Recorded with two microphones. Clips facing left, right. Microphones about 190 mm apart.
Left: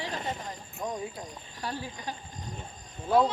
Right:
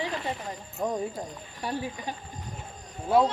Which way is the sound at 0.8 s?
30° right (ahead or behind).